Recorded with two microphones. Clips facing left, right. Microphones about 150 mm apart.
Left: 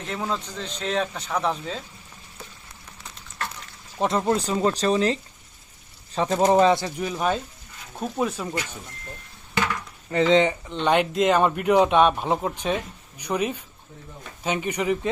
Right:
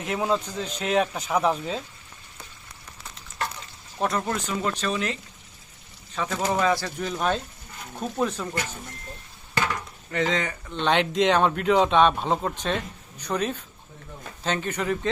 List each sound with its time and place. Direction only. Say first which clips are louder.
0.0 s speech: right 4 dB; 10° right (ahead or behind)
3.9 s speech: left 4 dB; 20° left (ahead or behind)
4.4 s speech: left 5 dB; 35° left (ahead or behind)
6.1 s speech: left 7 dB; 30° left (ahead or behind)
7.0 s speech: left 1 dB; 5° left (ahead or behind)
10.1 s speech: left 7 dB; 30° left (ahead or behind)